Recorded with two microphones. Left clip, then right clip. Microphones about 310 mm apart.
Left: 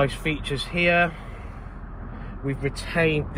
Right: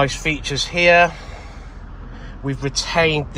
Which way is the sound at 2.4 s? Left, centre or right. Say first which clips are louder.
Right 6 dB; right.